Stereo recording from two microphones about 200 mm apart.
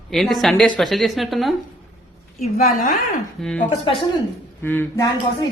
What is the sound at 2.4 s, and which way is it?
Speech, 40° left (ahead or behind).